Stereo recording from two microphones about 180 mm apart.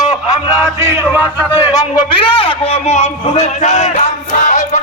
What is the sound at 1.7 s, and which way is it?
A man's voice, 25° left (ahead or behind).